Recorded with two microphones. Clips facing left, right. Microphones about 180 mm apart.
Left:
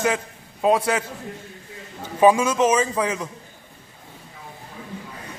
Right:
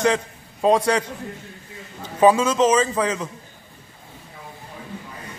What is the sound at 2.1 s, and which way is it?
A man's voice, 10° left (ahead or behind).